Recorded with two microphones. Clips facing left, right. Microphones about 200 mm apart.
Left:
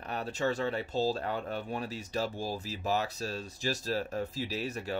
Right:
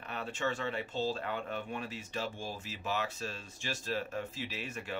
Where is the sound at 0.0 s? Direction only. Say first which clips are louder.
Left 4 dB; 40° left (ahead or behind).